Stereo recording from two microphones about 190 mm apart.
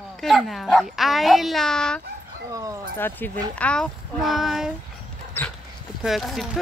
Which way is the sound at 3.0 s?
10° left (ahead or behind).